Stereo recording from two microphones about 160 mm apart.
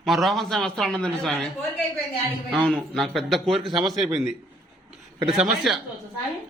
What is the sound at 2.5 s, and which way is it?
A man's voice, centre (ahead or behind).